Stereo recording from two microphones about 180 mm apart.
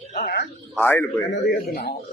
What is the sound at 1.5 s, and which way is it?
Speech, 55° left (ahead or behind).